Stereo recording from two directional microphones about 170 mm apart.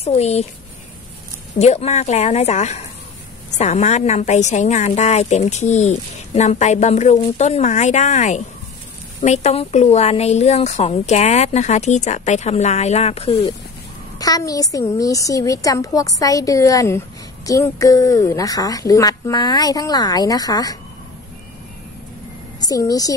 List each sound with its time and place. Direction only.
0.0 s a woman's voice: 40° left (ahead or behind)
1.6 s a woman's voice: 40° left (ahead or behind)
14.1 s speech: 20° left (ahead or behind)
22.6 s a woman's voice: 20° left (ahead or behind)